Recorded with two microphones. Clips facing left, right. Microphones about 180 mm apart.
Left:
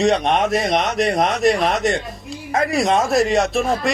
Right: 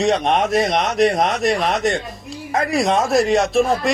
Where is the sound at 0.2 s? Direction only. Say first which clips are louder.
Right 1 dB; 35° right (ahead or behind).